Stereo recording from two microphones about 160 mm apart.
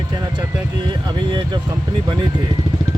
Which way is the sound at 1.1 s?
30° right (ahead or behind).